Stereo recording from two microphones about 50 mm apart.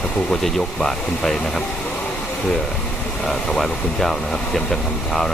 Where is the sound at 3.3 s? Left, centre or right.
Centre.